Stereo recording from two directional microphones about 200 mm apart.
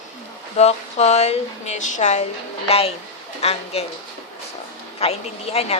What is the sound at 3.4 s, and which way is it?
Speech, 30° left (ahead or behind).